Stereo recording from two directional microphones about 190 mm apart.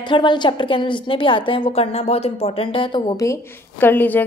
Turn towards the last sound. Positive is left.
turn(degrees=10)  # may be behind; listen again after turning